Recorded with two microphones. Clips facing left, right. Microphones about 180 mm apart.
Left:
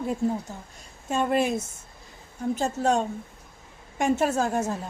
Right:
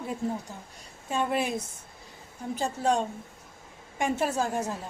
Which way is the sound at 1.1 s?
45° left (ahead or behind).